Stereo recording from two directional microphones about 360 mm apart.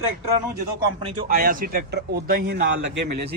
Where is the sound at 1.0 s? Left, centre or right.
Right.